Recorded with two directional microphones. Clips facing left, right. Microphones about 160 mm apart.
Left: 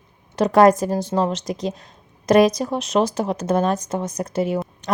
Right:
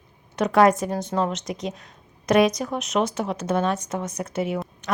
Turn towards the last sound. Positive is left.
turn(degrees=35)  # may be behind; listen again after turning